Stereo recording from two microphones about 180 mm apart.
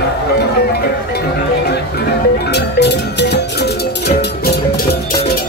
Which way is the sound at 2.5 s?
70° left (ahead or behind).